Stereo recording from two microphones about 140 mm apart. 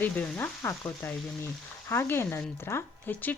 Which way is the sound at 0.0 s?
10° left (ahead or behind).